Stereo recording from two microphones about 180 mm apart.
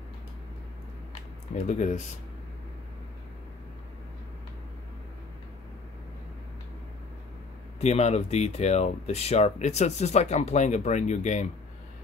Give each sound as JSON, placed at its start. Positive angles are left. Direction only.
{"t": 1.5, "sound": "speech", "side_deg": 40}
{"t": 7.8, "sound": "speech", "side_deg": 35}